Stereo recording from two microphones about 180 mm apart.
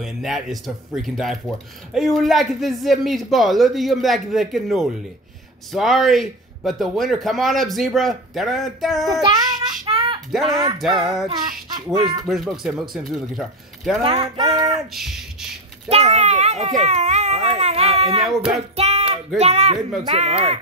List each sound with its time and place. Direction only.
0.0 s speech: centre (ahead or behind)
9.2 s child singing: 25° right (ahead or behind)
9.8 s a sound: 30° right (ahead or behind)
10.4 s music: 25° right (ahead or behind)
12.3 s speech: centre (ahead or behind)
14.0 s music: 25° right (ahead or behind)
15.9 s baby cry: 40° right (ahead or behind)
18.2 s speech: centre (ahead or behind)
18.5 s speech: 35° right (ahead or behind)